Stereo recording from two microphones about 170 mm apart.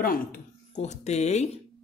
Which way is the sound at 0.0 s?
55° left (ahead or behind).